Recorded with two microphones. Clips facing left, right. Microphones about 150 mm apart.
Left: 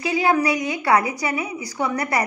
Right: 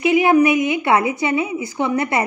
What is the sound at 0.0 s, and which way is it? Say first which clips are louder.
A woman's voice: right 6 dB; 20° right (ahead or behind).